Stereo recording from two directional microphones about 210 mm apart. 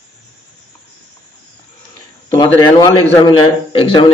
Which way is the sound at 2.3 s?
15° left (ahead or behind).